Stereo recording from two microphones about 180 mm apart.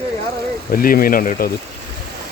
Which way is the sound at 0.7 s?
50° left (ahead or behind).